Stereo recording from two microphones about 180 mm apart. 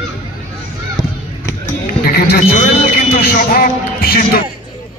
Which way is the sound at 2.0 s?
55° left (ahead or behind).